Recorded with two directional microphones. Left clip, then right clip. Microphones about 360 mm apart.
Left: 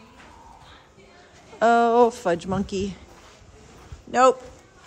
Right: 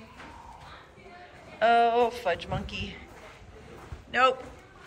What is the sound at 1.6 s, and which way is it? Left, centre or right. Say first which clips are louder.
A man's voice: left 5 dB; centre.